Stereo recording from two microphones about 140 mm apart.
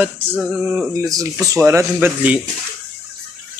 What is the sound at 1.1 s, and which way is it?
Speech, 20° right (ahead or behind).